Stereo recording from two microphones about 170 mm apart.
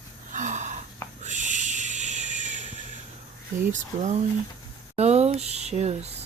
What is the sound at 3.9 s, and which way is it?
Speech, 45° right (ahead or behind).